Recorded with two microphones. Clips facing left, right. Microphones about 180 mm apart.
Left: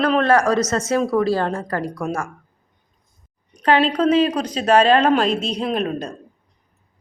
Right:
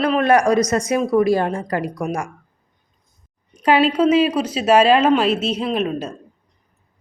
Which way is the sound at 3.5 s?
10° right (ahead or behind).